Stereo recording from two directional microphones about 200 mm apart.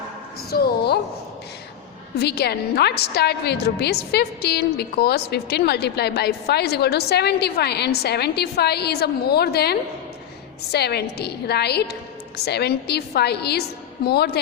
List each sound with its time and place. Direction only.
0.5 s a woman's voice: 50° left (ahead or behind)
2.1 s a woman's voice: 55° left (ahead or behind)